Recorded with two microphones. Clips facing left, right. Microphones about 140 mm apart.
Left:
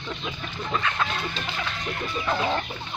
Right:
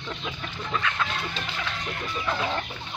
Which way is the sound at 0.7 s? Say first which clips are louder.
Left 1 dB; 35° left (ahead or behind).